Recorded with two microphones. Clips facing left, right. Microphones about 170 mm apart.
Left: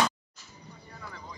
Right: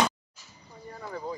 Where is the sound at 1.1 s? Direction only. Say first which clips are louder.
Right 12 dB; 35° right (ahead or behind).